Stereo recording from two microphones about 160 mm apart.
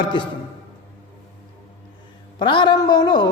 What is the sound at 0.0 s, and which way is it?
Speech, 30° left (ahead or behind).